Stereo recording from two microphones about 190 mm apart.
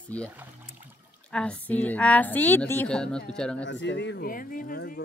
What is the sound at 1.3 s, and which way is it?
A woman's voice, 5° left (ahead or behind).